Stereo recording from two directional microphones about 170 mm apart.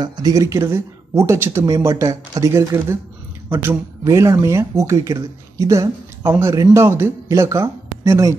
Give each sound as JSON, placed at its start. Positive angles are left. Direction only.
{"t": 0.0, "sound": "speech", "side_deg": -25}